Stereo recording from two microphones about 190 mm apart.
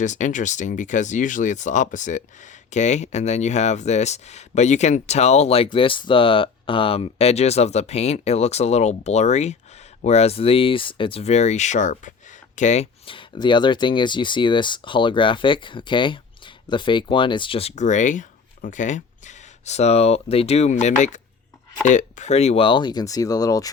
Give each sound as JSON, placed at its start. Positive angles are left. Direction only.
{"t": 0.0, "sound": "speech", "side_deg": 40}